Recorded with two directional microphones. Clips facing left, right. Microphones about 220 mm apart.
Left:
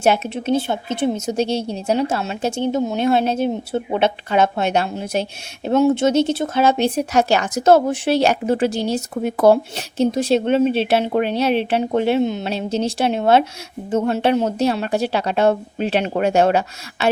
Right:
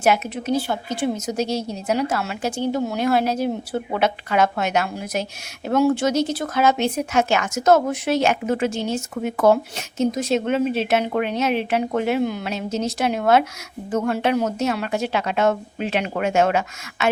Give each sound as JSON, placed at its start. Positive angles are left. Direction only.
{"t": 0.0, "sound": "a woman's voice", "side_deg": 30}